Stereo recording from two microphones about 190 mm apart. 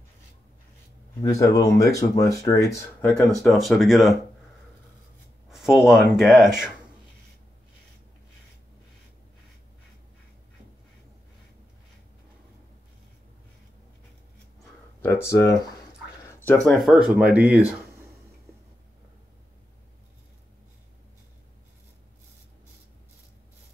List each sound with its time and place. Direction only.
1.2 s speech: 15° left (ahead or behind); by 4.2 s centre (ahead or behind)
5.5 s speech: centre (ahead or behind)
15.0 s speech: 15° left (ahead or behind)
16.6 s speech: centre (ahead or behind)